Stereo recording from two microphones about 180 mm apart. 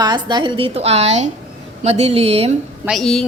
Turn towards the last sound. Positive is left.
turn(degrees=0)  # may be behind; listen again after turning